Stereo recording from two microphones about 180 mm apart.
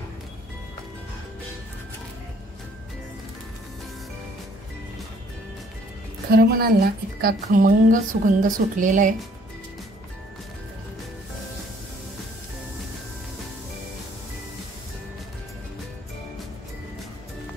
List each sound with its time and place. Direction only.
6.3 s a woman's voice: 60° right (ahead or behind)